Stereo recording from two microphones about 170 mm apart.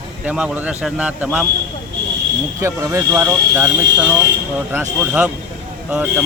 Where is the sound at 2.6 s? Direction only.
20° right (ahead or behind).